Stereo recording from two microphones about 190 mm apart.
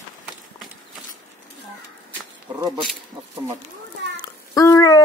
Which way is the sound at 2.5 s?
25° right (ahead or behind).